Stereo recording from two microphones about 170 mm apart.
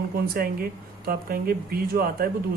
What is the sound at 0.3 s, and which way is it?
Speech, 60° right (ahead or behind).